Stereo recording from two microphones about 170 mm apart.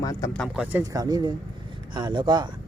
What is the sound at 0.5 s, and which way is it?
Speech, 5° right (ahead or behind).